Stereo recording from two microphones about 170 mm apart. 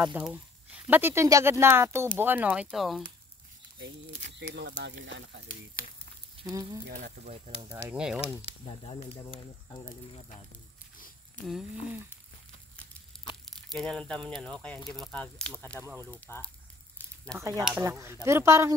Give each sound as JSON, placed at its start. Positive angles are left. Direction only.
{"t": 0.0, "sound": "speech", "side_deg": -10}
{"t": 4.2, "sound": "speech", "side_deg": -90}
{"t": 6.5, "sound": "speech", "side_deg": -20}
{"t": 6.9, "sound": "speech", "side_deg": -50}
{"t": 7.9, "sound": "speech", "side_deg": -5}
{"t": 8.4, "sound": "speech", "side_deg": 30}
{"t": 13.5, "sound": "speech", "side_deg": 0}
{"t": 17.0, "sound": "a sound", "side_deg": 10}
{"t": 17.4, "sound": "speech", "side_deg": -20}